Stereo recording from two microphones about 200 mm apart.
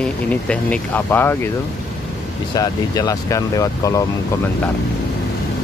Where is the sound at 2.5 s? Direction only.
15° left (ahead or behind).